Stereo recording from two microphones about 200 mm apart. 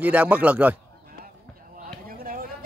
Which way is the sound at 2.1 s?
45° right (ahead or behind).